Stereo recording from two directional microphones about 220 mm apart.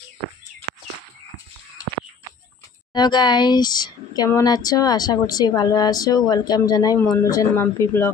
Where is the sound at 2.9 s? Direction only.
20° left (ahead or behind).